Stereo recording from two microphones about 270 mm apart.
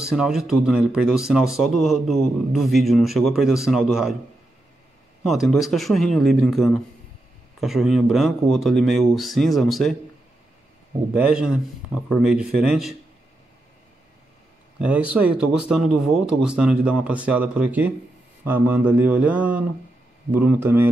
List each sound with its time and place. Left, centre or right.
0.0 s speech: centre
5.2 s speech: centre
11.1 s speech: centre
14.8 s speech: centre